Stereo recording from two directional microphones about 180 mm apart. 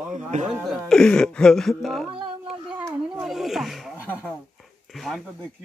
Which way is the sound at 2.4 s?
5° right (ahead or behind).